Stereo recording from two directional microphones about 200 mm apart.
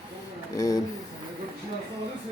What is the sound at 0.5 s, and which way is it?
Speech, 15° left (ahead or behind).